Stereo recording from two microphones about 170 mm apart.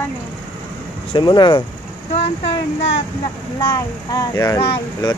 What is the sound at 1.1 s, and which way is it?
Speech, 25° left (ahead or behind).